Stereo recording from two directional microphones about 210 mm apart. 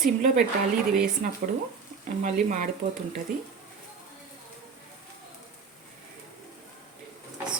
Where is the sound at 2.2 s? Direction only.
40° right (ahead or behind).